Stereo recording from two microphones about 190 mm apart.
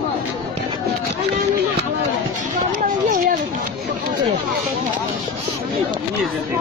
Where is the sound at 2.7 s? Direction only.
45° right (ahead or behind).